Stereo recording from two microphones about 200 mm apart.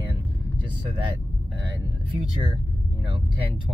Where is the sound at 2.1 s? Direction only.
25° right (ahead or behind).